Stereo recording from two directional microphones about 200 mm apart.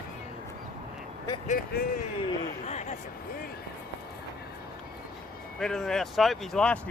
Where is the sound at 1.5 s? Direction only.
45° left (ahead or behind).